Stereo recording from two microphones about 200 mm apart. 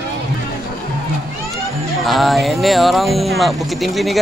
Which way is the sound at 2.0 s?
Centre (ahead or behind).